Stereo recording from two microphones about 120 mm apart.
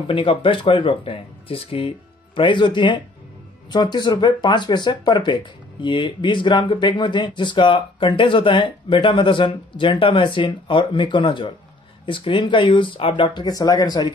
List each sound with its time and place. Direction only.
0.1 s speech: 45° left (ahead or behind)